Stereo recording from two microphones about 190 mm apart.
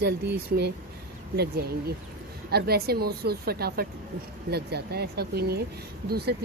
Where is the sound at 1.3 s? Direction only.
55° right (ahead or behind).